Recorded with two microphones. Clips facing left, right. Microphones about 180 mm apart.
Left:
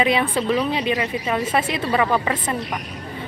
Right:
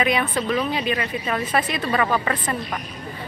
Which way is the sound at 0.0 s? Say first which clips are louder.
Left 2 dB; 25° left (ahead or behind).